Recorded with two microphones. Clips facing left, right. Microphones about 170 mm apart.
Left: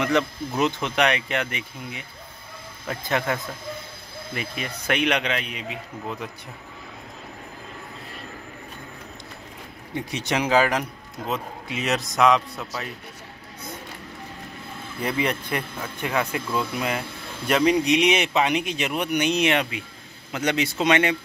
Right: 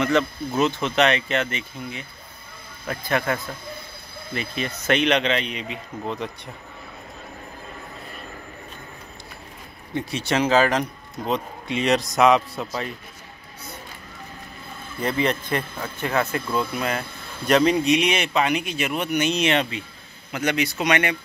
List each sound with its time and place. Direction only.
0.0 s a man's voice: 15° left (ahead or behind)
9.9 s a man's voice: 15° left (ahead or behind)
15.0 s a man's voice: 10° left (ahead or behind)